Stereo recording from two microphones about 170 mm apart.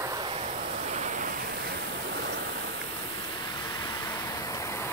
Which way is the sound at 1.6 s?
75° right (ahead or behind).